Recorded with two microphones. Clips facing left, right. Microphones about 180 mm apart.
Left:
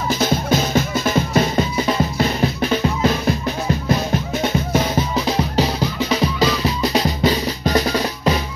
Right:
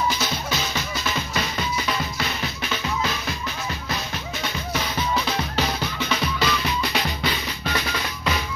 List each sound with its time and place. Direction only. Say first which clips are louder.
0.1 s music: left 9 dB; 50° left (ahead or behind)